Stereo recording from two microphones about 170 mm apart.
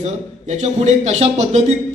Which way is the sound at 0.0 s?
45° right (ahead or behind).